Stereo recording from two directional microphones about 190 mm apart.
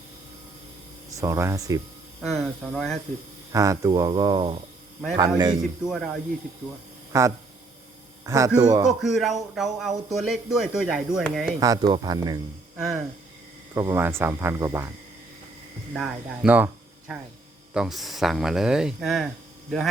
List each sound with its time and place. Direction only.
1.2 s speech: 15° right (ahead or behind)
2.2 s speech: centre (ahead or behind)
3.5 s speech: 15° right (ahead or behind)
7.1 s speech: 15° right (ahead or behind)
8.9 s speech: centre (ahead or behind)
11.6 s speech: 20° right (ahead or behind)
12.7 s speech: 5° right (ahead or behind)
13.7 s speech: 15° right (ahead or behind)
15.9 s speech: centre (ahead or behind)